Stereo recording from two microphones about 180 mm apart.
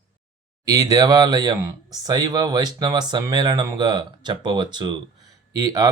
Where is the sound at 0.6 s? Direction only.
20° right (ahead or behind).